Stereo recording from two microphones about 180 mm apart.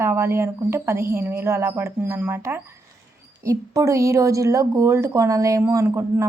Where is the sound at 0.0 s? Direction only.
15° right (ahead or behind).